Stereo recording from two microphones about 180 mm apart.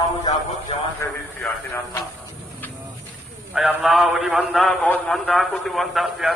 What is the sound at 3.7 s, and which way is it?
A man's voice, centre (ahead or behind).